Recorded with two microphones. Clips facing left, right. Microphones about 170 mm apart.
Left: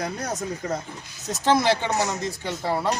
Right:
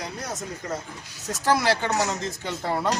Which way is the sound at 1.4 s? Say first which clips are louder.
Left 2 dB; 20° left (ahead or behind).